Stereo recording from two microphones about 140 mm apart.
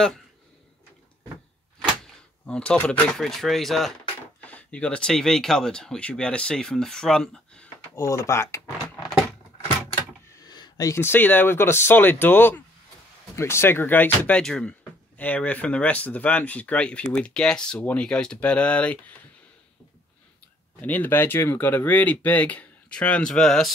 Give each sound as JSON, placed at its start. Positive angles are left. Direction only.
{"t": 2.4, "sound": "speech", "side_deg": 5}
{"t": 10.4, "sound": "speech", "side_deg": 30}
{"t": 20.8, "sound": "speech", "side_deg": 10}